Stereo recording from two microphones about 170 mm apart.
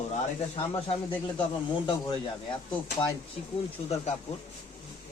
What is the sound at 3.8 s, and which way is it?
Speech, 40° left (ahead or behind).